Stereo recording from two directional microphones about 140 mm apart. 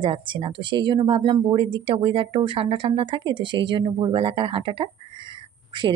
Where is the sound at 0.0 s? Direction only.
35° right (ahead or behind).